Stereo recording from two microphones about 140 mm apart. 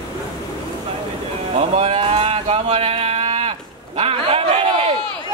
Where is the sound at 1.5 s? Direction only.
45° right (ahead or behind).